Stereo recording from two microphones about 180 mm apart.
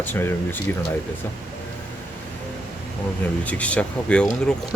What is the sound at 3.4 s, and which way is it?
Speech, 5° left (ahead or behind).